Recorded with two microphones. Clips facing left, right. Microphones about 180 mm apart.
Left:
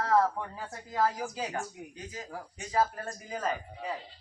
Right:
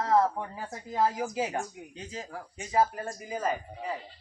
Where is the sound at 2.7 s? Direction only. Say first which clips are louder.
Right 3 dB; 20° right (ahead or behind).